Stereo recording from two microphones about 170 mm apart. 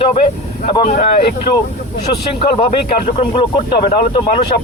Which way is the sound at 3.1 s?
30° left (ahead or behind).